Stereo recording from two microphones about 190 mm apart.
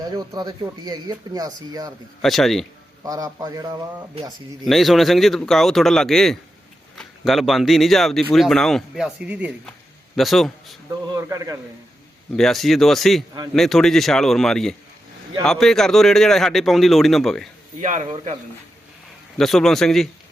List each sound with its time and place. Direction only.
0.0 s speech: 20° right (ahead or behind)
2.2 s a man's voice: centre (ahead or behind)
3.0 s speech: 20° right (ahead or behind)
4.6 s a man's voice: centre (ahead or behind)
11.1 s a man's voice: 15° right (ahead or behind)
12.4 s a man's voice: centre (ahead or behind)
17.7 s speech: 40° right (ahead or behind)
19.4 s a man's voice: centre (ahead or behind)